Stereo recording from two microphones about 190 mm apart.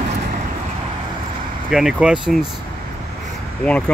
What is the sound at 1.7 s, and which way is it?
Speech, centre (ahead or behind).